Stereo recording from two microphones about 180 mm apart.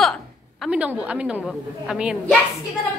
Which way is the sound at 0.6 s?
5° right (ahead or behind).